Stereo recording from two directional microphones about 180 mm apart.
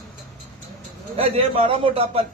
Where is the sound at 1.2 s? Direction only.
30° right (ahead or behind).